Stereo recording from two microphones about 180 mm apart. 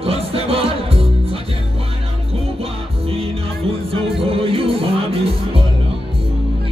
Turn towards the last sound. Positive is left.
turn(degrees=-30)  # may be behind; listen again after turning